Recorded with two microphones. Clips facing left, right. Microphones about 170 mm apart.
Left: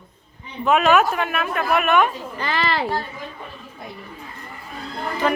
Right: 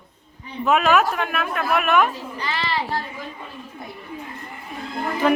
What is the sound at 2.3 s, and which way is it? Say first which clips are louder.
Speech: left 3 dB; 50° left (ahead or behind).